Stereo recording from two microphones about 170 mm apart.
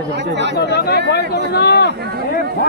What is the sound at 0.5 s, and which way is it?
Speech, 80° left.